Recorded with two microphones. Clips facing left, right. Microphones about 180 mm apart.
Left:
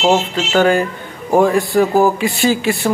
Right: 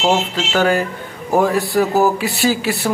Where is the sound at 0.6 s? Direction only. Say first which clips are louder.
Left 3 dB; 5° right (ahead or behind).